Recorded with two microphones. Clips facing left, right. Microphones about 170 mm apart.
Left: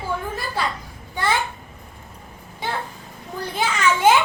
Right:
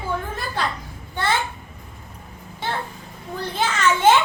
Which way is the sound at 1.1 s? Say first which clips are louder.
Even; 10° left (ahead or behind).